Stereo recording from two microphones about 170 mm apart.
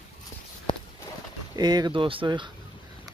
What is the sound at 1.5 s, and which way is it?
Speech, 25° right (ahead or behind).